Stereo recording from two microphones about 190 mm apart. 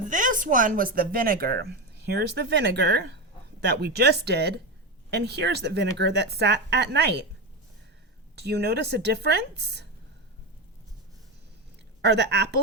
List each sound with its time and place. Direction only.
0.1 s speech: 45° right (ahead or behind); by 7.2 s 60° right (ahead or behind)
8.4 s speech: 60° right (ahead or behind)
12.0 s speech: 60° right (ahead or behind)